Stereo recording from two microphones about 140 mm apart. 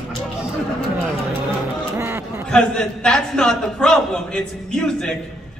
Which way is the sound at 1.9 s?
15° right (ahead or behind).